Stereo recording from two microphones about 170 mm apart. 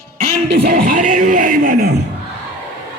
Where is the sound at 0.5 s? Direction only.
70° right (ahead or behind); by 1.9 s 55° right (ahead or behind).